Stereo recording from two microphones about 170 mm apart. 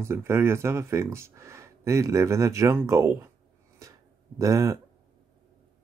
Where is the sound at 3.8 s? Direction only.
20° right (ahead or behind).